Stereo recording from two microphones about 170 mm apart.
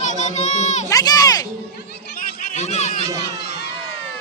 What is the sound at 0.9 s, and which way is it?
Speech, 20° left (ahead or behind).